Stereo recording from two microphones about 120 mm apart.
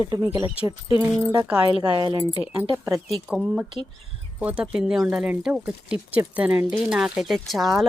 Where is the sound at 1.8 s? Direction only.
35° right (ahead or behind).